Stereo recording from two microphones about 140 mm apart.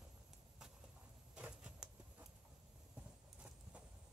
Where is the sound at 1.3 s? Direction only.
5° right (ahead or behind).